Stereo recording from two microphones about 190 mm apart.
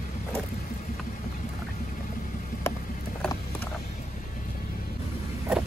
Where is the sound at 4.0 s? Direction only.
45° left (ahead or behind).